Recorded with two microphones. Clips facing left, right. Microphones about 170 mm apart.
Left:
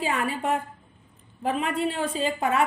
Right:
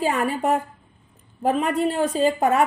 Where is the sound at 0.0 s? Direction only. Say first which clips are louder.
Right 5 dB; 45° right (ahead or behind).